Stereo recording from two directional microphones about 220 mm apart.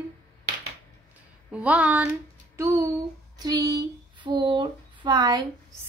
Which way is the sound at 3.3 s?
15° right (ahead or behind).